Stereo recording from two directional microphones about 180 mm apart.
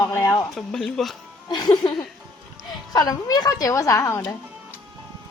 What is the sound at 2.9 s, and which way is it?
A woman's voice, 20° left (ahead or behind).